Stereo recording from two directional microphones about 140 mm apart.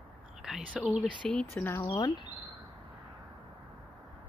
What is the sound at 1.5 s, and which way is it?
Speech, 20° left (ahead or behind).